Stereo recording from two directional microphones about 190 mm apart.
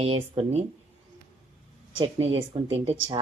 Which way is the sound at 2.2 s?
85° right.